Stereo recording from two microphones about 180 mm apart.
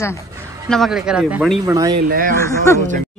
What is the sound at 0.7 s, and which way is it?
Speech, centre (ahead or behind).